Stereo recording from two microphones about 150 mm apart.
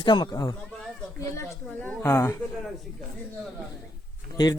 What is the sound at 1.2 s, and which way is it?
Speech, 15° left (ahead or behind).